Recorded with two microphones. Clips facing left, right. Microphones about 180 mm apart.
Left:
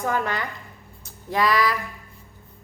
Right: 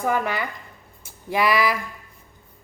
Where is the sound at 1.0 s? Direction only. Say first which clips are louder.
Right 1 dB; 10° right (ahead or behind).